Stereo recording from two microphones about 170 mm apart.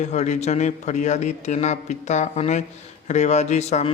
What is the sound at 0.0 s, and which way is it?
A man's voice, 45° left (ahead or behind).